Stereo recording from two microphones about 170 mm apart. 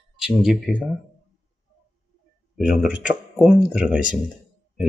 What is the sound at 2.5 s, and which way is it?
Speech, 5° right (ahead or behind).